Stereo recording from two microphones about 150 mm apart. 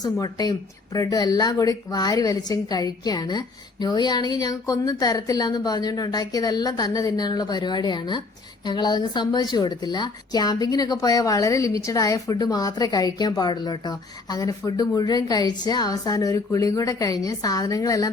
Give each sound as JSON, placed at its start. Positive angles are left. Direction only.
{"t": 0.0, "sound": "a woman's voice", "side_deg": 25}